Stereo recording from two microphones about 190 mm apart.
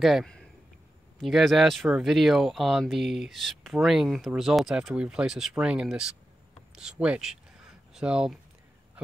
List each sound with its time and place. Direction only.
0.0 s speech: centre (ahead or behind)